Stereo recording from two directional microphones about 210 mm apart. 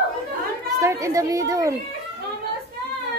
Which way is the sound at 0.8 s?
15° right (ahead or behind).